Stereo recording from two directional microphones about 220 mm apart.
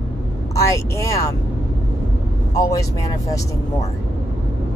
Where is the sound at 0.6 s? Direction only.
15° left (ahead or behind).